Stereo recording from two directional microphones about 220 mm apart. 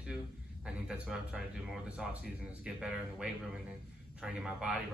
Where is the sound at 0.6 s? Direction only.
5° right (ahead or behind).